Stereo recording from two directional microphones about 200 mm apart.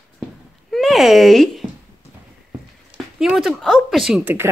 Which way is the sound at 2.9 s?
Centre (ahead or behind).